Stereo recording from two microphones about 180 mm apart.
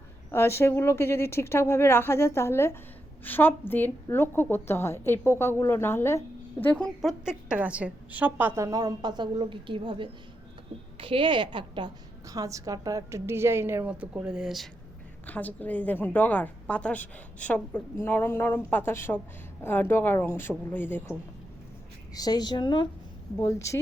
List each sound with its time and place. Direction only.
0.3 s a woman's voice: 15° left (ahead or behind)